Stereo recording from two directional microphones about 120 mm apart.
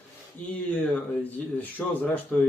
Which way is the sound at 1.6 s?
15° left (ahead or behind).